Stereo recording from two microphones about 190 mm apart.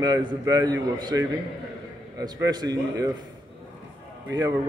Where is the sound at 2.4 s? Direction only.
20° right (ahead or behind).